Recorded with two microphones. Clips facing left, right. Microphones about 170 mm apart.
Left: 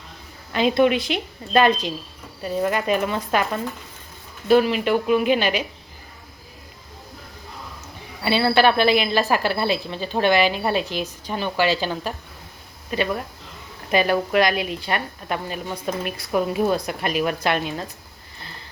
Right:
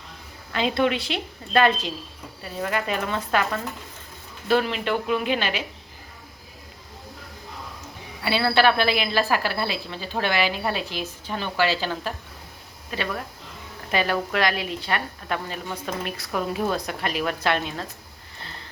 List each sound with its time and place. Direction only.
0.5 s a woman's voice: 15° left (ahead or behind)
8.2 s a woman's voice: 20° left (ahead or behind)
13.9 s a woman's voice: 15° left (ahead or behind)